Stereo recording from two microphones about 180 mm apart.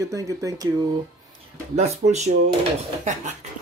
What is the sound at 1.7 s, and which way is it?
Speech, 35° right (ahead or behind).